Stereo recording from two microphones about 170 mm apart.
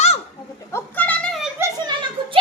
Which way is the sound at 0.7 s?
10° left (ahead or behind).